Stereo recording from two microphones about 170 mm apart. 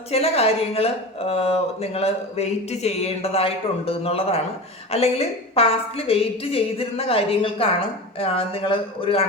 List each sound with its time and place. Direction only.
0.1 s speech: 35° left (ahead or behind)